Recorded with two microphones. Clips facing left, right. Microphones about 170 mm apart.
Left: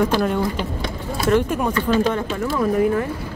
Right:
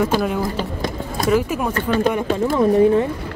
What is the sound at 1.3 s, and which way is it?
Speech, 5° right (ahead or behind).